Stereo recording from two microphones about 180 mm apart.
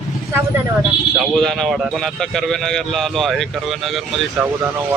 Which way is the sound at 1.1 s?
Centre (ahead or behind).